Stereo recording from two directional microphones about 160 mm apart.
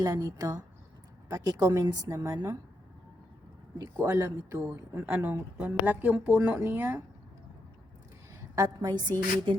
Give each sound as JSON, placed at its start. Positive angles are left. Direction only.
{"t": 0.0, "sound": "a woman's voice", "side_deg": -20}
{"t": 3.9, "sound": "speech", "side_deg": -15}
{"t": 8.5, "sound": "a woman's voice", "side_deg": -20}